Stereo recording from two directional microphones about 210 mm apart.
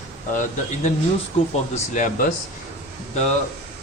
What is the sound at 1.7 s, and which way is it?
Speech, 35° left (ahead or behind).